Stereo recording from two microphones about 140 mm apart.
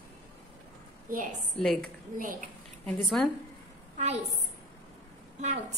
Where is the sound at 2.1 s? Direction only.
75° right (ahead or behind).